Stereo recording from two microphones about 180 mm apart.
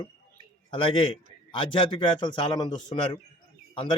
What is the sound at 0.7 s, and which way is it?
A man's voice, 30° left (ahead or behind).